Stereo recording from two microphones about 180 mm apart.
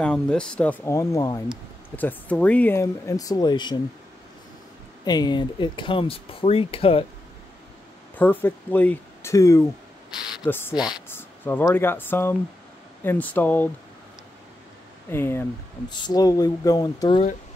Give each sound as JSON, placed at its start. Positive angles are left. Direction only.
{"t": 0.0, "sound": "speech", "side_deg": 5}
{"t": 5.0, "sound": "speech", "side_deg": 20}
{"t": 8.2, "sound": "speech", "side_deg": 10}
{"t": 15.0, "sound": "speech", "side_deg": 15}